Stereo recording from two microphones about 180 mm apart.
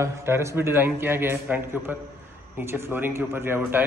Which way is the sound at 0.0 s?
15° right (ahead or behind).